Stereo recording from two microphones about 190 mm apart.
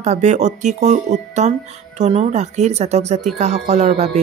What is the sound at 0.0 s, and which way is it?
Music, 35° right (ahead or behind).